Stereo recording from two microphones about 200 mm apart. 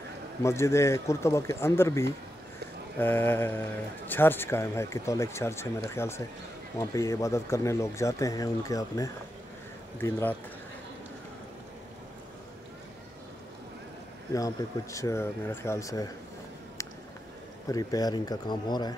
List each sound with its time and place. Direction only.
0.4 s speech: 15° left (ahead or behind)
14.3 s speech: 15° left (ahead or behind)
17.6 s speech: 20° left (ahead or behind)